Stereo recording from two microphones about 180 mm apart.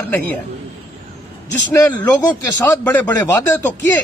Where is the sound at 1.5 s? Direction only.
10° left (ahead or behind).